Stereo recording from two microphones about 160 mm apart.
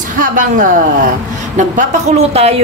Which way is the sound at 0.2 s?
55° right (ahead or behind).